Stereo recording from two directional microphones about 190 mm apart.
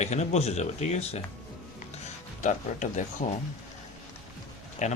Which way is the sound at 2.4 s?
40° left (ahead or behind).